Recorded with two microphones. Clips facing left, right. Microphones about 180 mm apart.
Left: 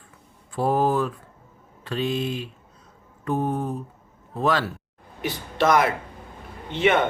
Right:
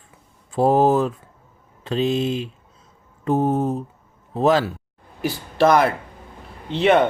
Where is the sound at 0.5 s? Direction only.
25° right (ahead or behind).